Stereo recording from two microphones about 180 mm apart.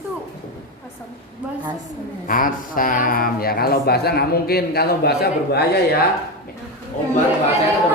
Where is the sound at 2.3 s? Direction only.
50° left (ahead or behind).